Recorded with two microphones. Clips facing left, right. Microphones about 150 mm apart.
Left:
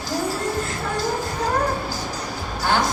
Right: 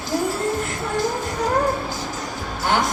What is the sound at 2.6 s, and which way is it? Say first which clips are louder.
Speech: even; 20° right (ahead or behind).